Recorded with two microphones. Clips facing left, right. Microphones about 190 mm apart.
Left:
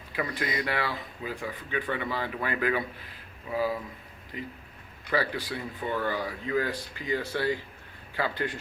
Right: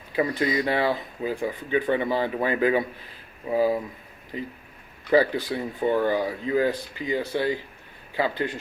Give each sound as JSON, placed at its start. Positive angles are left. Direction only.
{"t": 0.2, "sound": "speech", "side_deg": -25}
{"t": 5.1, "sound": "speech", "side_deg": -20}